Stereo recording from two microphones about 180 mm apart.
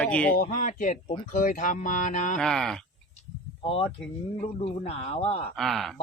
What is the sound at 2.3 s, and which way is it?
Speech, centre (ahead or behind).